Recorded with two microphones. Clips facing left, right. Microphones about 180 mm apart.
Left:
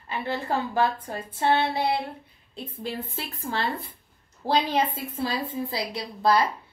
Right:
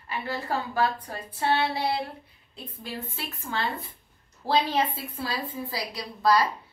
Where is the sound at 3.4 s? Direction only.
35° left (ahead or behind).